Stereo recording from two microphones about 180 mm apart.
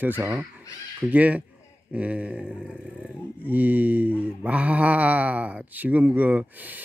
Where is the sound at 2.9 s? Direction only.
10° left (ahead or behind).